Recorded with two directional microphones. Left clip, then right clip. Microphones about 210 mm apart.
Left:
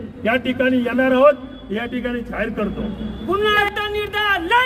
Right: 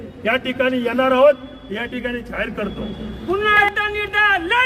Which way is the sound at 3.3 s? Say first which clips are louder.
Right 2 dB; 45° left (ahead or behind).